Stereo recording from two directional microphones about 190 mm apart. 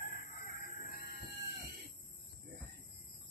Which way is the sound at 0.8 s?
50° left (ahead or behind).